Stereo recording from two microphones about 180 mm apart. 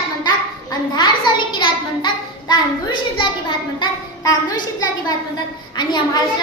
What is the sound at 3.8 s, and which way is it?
Child singing, 20° left (ahead or behind).